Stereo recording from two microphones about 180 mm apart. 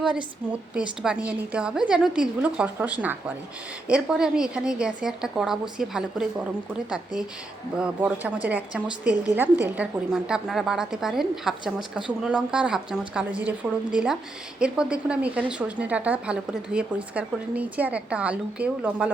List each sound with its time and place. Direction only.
0.7 s a woman's voice: 5° right (ahead or behind)